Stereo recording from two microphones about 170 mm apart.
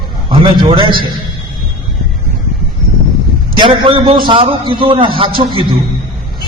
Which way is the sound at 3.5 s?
30° right (ahead or behind).